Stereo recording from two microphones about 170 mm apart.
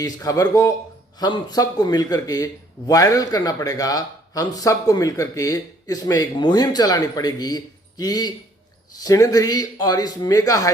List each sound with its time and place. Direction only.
0.0 s a man's voice: 20° left (ahead or behind)